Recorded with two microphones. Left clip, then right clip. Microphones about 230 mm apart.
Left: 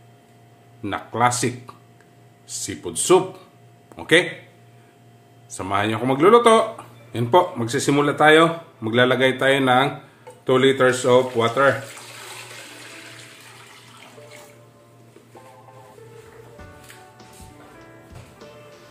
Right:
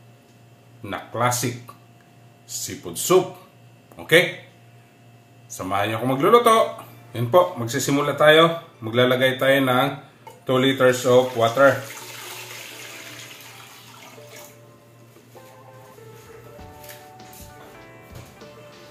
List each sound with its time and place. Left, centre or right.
0.8 s speech: left
5.5 s speech: left